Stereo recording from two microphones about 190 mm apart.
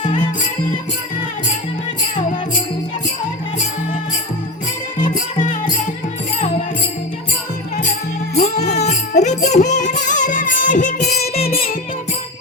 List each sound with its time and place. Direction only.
4.9 s music: 45° left (ahead or behind)
8.9 s music: 35° left (ahead or behind)
11.4 s music: 50° left (ahead or behind)